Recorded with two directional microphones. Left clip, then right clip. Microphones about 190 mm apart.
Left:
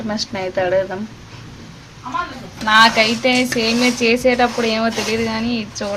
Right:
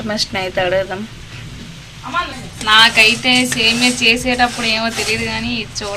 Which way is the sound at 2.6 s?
40° left (ahead or behind).